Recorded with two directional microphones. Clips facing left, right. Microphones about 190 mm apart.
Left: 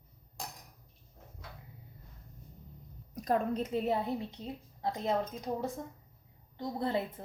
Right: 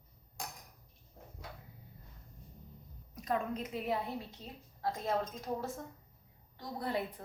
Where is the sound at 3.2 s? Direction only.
40° left (ahead or behind); by 7.0 s 25° left (ahead or behind).